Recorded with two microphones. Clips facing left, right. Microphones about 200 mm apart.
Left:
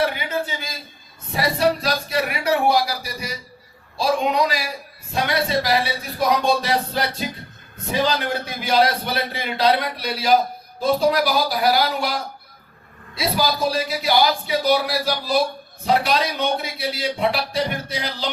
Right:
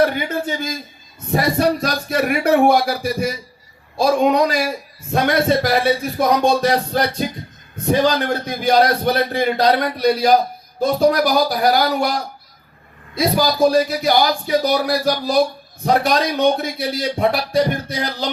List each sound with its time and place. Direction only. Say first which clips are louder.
0.0 s a sound: right 5 dB; 50° right (ahead or behind)
1.3 s a man's voice: right 3 dB; 50° right (ahead or behind)
13.1 s a man's voice: right 5 dB; 45° right (ahead or behind)